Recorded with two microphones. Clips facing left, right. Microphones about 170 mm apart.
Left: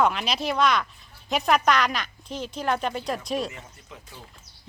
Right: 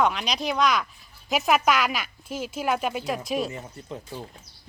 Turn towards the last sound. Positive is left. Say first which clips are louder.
# right 9 dB
turn(degrees=-35)  # may be behind; listen again after turning